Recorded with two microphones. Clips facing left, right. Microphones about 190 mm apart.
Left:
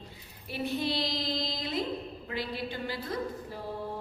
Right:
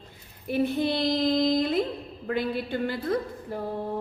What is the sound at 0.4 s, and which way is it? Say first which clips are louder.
Female singing: right 7 dB; 50° right (ahead or behind).